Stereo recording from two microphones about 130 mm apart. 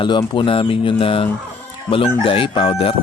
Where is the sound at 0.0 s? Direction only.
40° left (ahead or behind).